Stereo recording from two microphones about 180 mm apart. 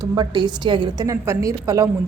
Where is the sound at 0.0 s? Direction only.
20° right (ahead or behind).